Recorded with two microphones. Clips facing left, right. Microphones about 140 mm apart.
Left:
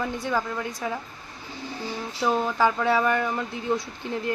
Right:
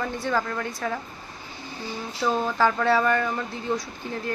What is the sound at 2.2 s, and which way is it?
Speech, 15° left (ahead or behind).